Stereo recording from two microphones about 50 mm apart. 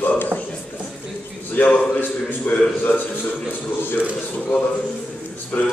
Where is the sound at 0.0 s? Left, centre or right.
Left.